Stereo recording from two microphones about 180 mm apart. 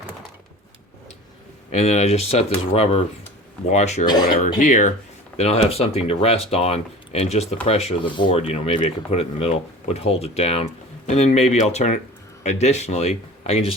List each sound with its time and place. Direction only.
1.7 s speech: 35° left (ahead or behind)
4.0 s speech: 25° left (ahead or behind)
4.4 s speech: 45° left (ahead or behind)